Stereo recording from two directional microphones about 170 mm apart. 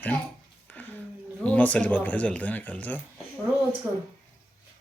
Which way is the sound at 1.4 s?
10° left (ahead or behind).